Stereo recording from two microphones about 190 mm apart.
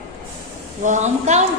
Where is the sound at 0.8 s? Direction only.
40° right (ahead or behind).